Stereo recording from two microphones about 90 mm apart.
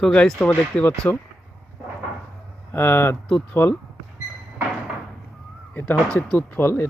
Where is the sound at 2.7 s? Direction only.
20° left (ahead or behind).